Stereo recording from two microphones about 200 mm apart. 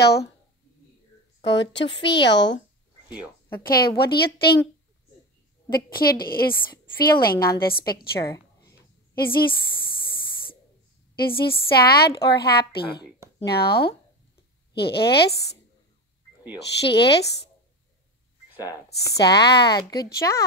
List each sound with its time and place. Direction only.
1.4 s speech: 60° left (ahead or behind)
1.9 s a woman's voice: 25° left (ahead or behind)
2.2 s speech: 60° left (ahead or behind)
3.6 s a woman's voice: 50° left (ahead or behind)
5.7 s a woman's voice: 50° left (ahead or behind)
11.1 s a woman's voice: 50° left (ahead or behind)
16.5 s speech: 55° left (ahead or behind)
19.1 s speech: 55° left (ahead or behind)